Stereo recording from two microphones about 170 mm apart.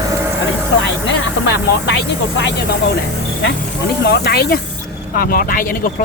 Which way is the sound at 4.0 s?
70° left (ahead or behind).